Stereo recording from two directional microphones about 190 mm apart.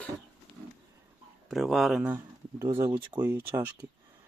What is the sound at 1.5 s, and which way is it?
Speech, centre (ahead or behind).